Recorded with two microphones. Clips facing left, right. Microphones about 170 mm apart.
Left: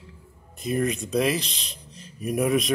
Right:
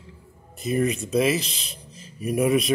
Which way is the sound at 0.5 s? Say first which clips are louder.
Right 2 dB; centre (ahead or behind).